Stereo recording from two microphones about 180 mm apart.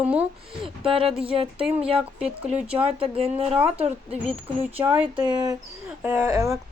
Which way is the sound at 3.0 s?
30° right (ahead or behind).